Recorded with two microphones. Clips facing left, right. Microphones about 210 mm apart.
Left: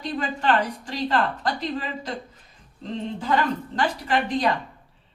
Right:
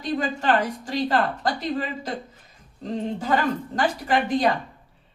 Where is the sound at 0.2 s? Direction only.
40° right (ahead or behind).